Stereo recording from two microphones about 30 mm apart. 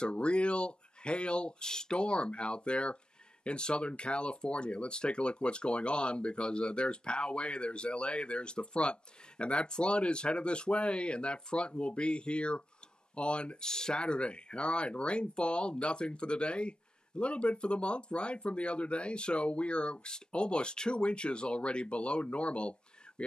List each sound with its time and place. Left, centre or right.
0.0 s speech: left
1.6 s speech: left
2.0 s speech: left
13.7 s speech: left